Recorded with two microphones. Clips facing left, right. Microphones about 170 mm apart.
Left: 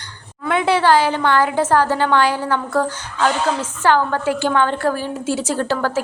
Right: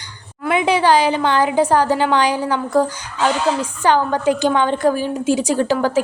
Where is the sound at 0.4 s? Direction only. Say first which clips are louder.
Even; 15° right (ahead or behind).